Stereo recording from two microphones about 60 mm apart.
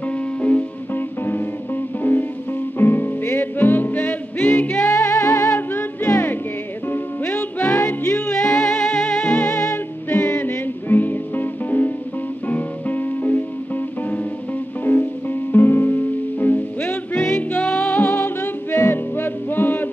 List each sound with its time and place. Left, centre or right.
0.4 s music: left
0.9 s music: left
4.8 s music: left
7.3 s music: left
8.3 s music: centre
9.5 s music: left
10.0 s music: left
14.9 s music: left
17.6 s music: centre
17.9 s music: left